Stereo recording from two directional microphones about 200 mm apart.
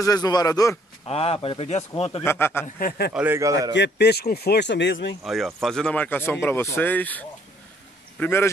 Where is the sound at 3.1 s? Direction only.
10° right (ahead or behind).